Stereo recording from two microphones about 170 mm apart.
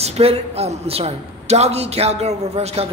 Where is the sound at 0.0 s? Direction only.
35° right (ahead or behind).